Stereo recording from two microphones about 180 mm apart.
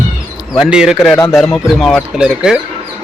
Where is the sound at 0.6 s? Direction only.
5° right (ahead or behind).